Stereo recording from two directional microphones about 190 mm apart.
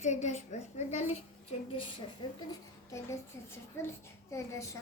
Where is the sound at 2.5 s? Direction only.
15° left (ahead or behind).